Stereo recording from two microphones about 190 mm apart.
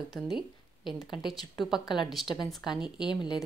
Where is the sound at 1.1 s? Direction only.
Centre (ahead or behind).